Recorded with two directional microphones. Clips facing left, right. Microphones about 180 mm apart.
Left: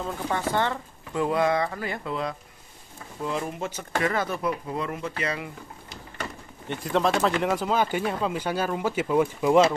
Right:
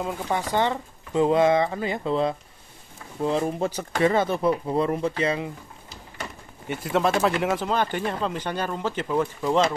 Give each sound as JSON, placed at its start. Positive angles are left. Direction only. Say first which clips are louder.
{"t": 0.0, "sound": "speech", "louder": "right 1 dB", "side_deg": -15}
{"t": 6.7, "sound": "speech", "louder": "right 1 dB", "side_deg": -5}